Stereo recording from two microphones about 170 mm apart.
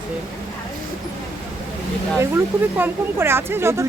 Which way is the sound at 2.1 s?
15° right (ahead or behind).